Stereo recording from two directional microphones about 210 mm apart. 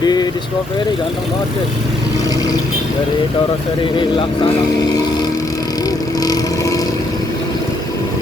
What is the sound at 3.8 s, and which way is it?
Speech, 25° left (ahead or behind).